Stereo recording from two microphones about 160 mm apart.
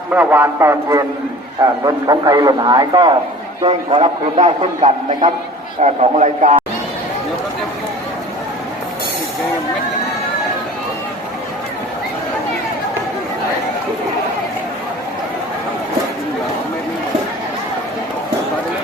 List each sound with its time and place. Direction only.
0.1 s a man's voice: 10° right (ahead or behind)
3.6 s a man's voice: 35° right (ahead or behind)